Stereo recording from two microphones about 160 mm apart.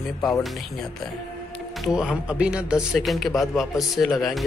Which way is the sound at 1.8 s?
5° right (ahead or behind).